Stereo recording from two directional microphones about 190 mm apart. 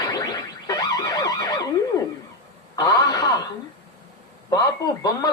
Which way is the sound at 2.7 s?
20° left (ahead or behind).